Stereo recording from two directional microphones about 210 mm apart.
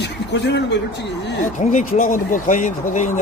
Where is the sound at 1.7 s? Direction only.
40° left (ahead or behind).